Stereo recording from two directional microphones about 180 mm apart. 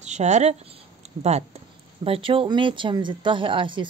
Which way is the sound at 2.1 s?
30° right (ahead or behind).